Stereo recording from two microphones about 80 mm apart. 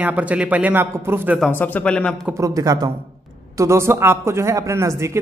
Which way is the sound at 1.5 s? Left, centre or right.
Left.